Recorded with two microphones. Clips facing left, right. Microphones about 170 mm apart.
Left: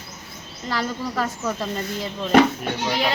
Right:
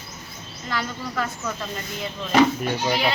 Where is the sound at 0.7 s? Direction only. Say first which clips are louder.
Left 3 dB; 35° left (ahead or behind).